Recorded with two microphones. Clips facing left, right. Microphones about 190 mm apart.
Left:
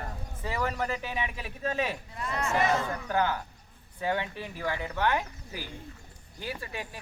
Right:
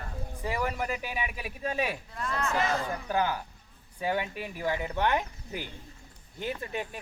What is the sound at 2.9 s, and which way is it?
Speech, 15° right (ahead or behind).